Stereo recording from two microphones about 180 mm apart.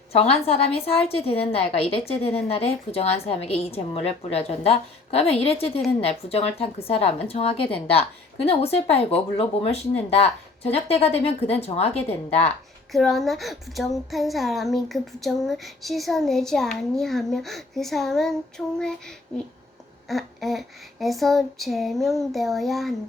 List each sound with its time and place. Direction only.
0.1 s a woman's voice: 35° left (ahead or behind)
12.9 s speech: centre (ahead or behind)